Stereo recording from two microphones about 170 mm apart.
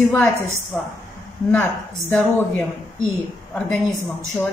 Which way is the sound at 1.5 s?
10° left (ahead or behind).